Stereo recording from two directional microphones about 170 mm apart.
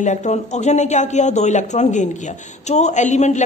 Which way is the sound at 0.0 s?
45° left (ahead or behind).